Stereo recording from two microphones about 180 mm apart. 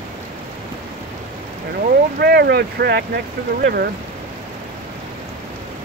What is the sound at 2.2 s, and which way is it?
Speech, 65° right (ahead or behind).